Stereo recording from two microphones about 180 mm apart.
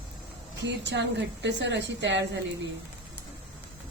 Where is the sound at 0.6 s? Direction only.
80° right.